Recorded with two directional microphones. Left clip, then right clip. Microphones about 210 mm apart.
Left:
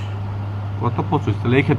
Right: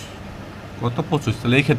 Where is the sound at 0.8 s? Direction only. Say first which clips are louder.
Left 2 dB; 90° right.